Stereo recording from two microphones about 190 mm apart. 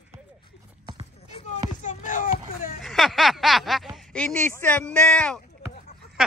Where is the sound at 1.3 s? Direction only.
40° left (ahead or behind).